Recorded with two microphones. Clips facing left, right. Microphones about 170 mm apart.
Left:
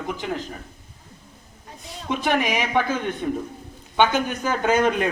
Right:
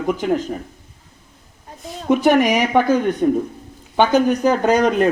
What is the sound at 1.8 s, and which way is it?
Speech, 45° right (ahead or behind).